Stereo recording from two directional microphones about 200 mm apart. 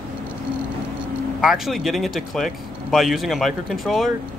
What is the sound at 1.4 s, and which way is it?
Speech, centre (ahead or behind).